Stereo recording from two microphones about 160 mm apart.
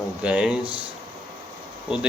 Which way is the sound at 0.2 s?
5° right (ahead or behind).